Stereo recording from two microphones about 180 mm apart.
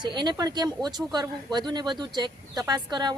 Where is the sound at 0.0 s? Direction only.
25° right (ahead or behind).